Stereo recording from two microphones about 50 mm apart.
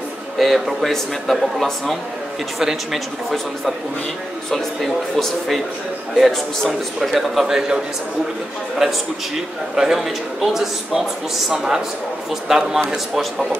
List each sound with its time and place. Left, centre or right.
0.4 s speech: centre
2.6 s a man's voice: centre
9.8 s a man's voice: centre